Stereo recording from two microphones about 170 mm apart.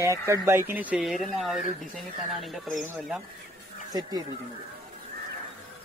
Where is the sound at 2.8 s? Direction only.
15° right (ahead or behind).